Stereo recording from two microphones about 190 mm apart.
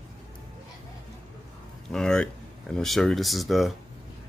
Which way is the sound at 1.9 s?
5° left (ahead or behind).